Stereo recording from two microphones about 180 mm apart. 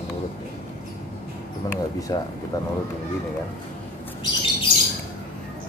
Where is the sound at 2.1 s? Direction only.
25° left (ahead or behind).